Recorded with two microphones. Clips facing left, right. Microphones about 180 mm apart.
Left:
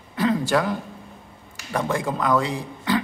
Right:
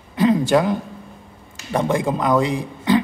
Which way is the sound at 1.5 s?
20° right (ahead or behind).